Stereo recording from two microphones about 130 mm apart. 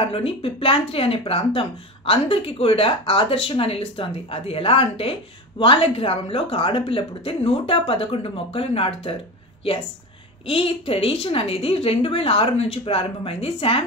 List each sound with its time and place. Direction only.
0.1 s speech: 45° left (ahead or behind)
10.4 s speech: 45° left (ahead or behind)